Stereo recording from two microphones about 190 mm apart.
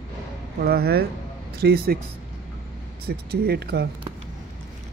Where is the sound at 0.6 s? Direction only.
55° right (ahead or behind).